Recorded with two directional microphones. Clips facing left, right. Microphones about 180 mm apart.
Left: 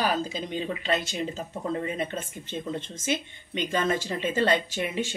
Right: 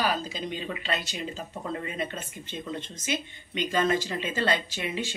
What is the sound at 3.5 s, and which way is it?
Speech, 50° left (ahead or behind).